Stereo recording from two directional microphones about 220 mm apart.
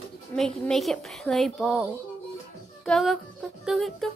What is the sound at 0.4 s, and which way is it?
Speech, centre (ahead or behind).